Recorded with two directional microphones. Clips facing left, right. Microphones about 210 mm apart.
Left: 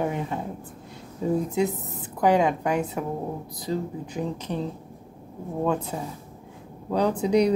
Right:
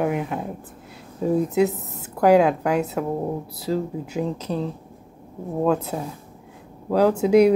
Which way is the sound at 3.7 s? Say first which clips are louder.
Right 4 dB; 90° right.